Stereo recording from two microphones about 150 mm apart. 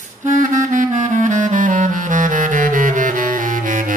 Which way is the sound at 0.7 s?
55° right (ahead or behind).